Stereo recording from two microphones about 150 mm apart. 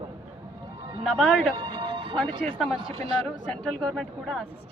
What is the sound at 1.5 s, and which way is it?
Music, 35° right (ahead or behind).